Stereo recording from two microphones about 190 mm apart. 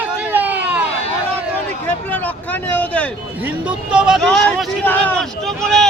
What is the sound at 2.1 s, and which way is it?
Vehicle, 10° left (ahead or behind).